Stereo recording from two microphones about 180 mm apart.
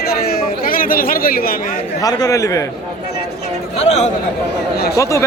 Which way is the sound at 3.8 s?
40° left (ahead or behind).